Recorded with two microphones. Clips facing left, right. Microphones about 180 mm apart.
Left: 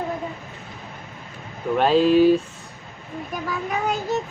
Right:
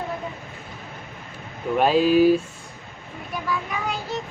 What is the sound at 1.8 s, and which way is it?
Speech, 5° right (ahead or behind).